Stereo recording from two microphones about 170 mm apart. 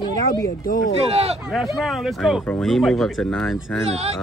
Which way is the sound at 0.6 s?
55° left (ahead or behind).